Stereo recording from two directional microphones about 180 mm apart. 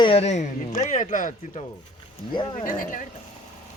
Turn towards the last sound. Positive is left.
turn(degrees=50)  # may be behind; listen again after turning